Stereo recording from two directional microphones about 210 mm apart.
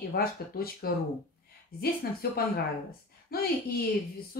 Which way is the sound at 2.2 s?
45° left (ahead or behind).